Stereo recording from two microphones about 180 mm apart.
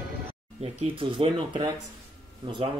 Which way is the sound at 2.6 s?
30° right (ahead or behind).